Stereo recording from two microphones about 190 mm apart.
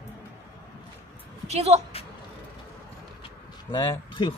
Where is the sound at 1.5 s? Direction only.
35° right (ahead or behind).